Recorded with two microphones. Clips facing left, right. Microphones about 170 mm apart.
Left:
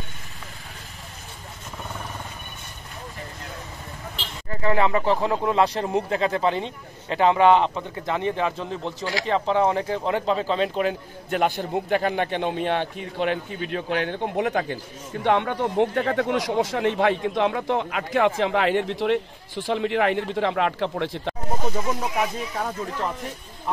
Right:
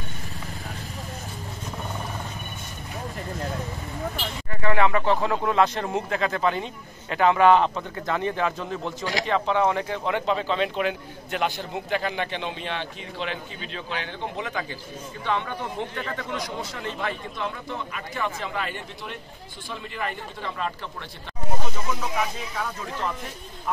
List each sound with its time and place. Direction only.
4.5 s speech: 30° left (ahead or behind); by 21.4 s 80° left